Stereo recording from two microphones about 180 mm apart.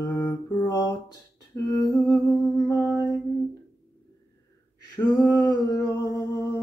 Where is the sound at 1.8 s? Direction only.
20° left (ahead or behind).